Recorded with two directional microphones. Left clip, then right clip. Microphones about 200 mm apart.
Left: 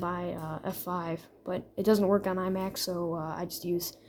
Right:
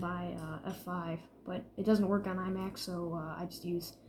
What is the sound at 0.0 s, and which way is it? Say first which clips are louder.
Speech: left 6 dB; 55° left (ahead or behind).